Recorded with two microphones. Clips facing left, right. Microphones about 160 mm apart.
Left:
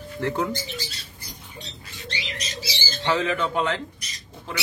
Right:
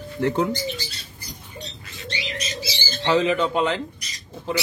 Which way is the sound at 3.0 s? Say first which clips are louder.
Right 4 dB; 20° right (ahead or behind).